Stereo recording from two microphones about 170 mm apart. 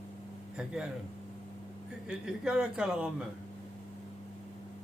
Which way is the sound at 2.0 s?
5° right (ahead or behind).